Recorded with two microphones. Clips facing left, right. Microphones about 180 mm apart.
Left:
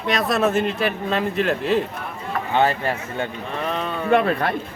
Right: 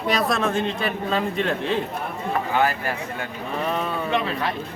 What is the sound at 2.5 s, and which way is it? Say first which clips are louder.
Speech: left 5 dB; 25° left (ahead or behind).